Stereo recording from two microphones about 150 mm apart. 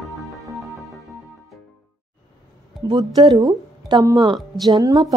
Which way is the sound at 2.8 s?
25° right (ahead or behind).